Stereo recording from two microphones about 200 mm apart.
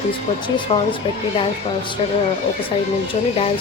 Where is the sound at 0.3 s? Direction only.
25° left (ahead or behind).